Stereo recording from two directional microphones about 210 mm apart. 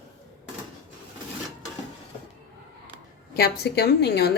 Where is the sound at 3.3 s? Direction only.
50° left (ahead or behind).